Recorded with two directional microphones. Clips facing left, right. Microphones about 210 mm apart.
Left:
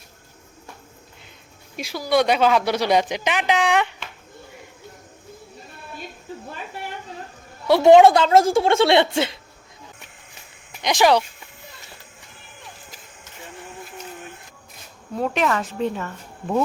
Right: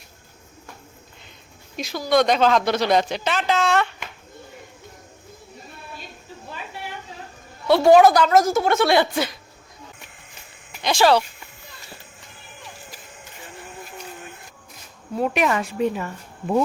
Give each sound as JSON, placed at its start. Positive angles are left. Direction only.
{"t": 1.7, "sound": "speech", "side_deg": 10}
{"t": 7.7, "sound": "a woman's voice", "side_deg": 20}
{"t": 10.8, "sound": "speech", "side_deg": 15}
{"t": 15.1, "sound": "speech", "side_deg": -10}